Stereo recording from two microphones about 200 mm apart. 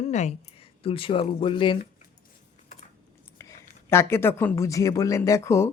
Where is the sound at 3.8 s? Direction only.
10° left (ahead or behind).